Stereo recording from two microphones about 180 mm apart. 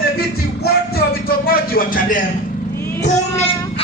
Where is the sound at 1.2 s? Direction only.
55° left (ahead or behind).